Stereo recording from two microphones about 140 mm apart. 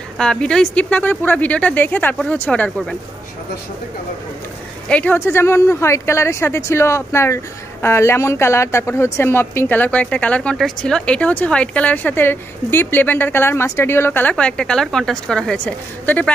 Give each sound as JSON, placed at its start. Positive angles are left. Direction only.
{"t": 0.2, "sound": "speech", "side_deg": 5}
{"t": 4.8, "sound": "speech", "side_deg": 10}